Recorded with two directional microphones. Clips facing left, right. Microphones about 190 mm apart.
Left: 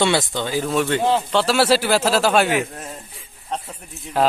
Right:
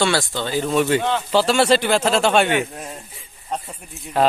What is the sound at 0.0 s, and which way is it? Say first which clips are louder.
Speech: left 1 dB; 20° left (ahead or behind).